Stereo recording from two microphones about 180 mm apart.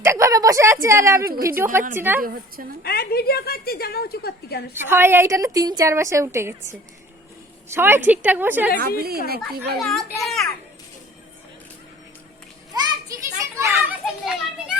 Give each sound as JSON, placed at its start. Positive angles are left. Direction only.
{"t": 0.0, "sound": "a woman's voice", "side_deg": -15}
{"t": 2.8, "sound": "a woman's voice", "side_deg": 60}
{"t": 4.7, "sound": "a woman's voice", "side_deg": -15}
{"t": 9.0, "sound": "a woman's voice", "side_deg": -60}
{"t": 9.7, "sound": "a child's voice", "side_deg": 0}
{"t": 12.7, "sound": "children playing", "side_deg": -20}
{"t": 14.0, "sound": "children playing", "side_deg": -5}